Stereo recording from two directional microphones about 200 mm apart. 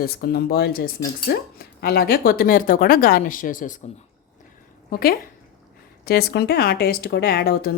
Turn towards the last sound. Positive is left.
turn(degrees=50)  # may be behind; listen again after turning